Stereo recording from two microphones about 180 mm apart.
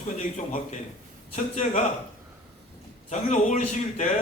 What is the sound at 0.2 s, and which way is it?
A man's voice, 45° left (ahead or behind).